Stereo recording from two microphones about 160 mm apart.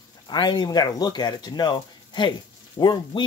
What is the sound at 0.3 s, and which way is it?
Speech, 30° left (ahead or behind).